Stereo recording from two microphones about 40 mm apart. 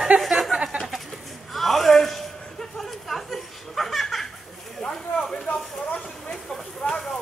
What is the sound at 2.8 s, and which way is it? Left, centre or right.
Laughter, centre.